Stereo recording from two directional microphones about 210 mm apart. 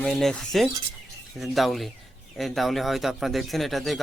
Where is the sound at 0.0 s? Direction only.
5° left (ahead or behind).